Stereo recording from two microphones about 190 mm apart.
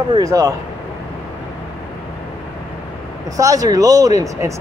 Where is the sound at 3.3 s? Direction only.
20° right (ahead or behind).